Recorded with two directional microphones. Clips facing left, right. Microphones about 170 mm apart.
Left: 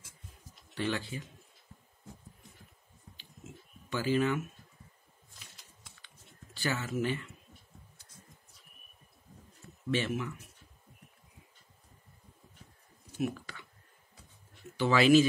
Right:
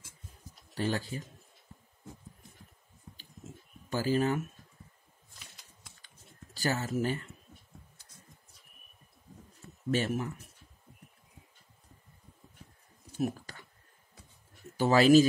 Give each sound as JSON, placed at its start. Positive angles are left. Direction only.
{"t": 0.7, "sound": "speech", "side_deg": -40}
{"t": 3.9, "sound": "speech", "side_deg": -40}
{"t": 6.0, "sound": "a sound", "side_deg": -40}
{"t": 9.8, "sound": "speech", "side_deg": -40}
{"t": 13.2, "sound": "a sound", "side_deg": -40}
{"t": 14.8, "sound": "speech", "side_deg": -40}